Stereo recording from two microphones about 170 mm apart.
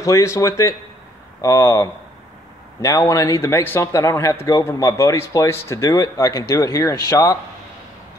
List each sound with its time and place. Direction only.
0.0 s a man's voice: 20° left (ahead or behind)